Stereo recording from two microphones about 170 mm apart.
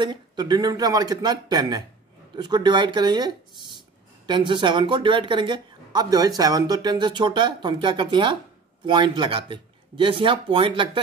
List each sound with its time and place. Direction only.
0.0 s speech: 25° right (ahead or behind)